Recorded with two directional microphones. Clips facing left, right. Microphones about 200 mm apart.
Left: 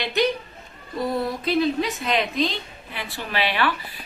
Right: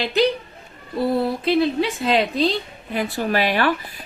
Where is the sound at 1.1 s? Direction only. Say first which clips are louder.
Right 4 dB; 30° right (ahead or behind).